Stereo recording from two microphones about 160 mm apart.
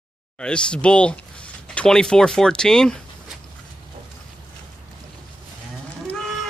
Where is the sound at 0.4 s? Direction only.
5° left (ahead or behind).